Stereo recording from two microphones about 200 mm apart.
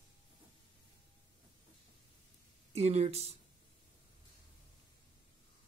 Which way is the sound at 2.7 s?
30° right (ahead or behind).